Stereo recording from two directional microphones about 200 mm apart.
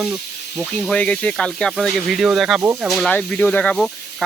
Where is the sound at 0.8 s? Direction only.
5° left (ahead or behind).